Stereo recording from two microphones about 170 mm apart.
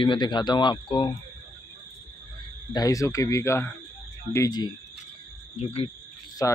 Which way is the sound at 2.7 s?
20° left (ahead or behind).